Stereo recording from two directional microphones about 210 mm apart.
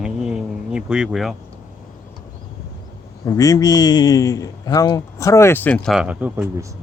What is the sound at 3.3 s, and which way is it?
A man's voice, 15° left (ahead or behind).